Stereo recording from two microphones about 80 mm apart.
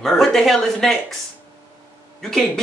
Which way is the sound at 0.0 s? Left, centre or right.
Centre.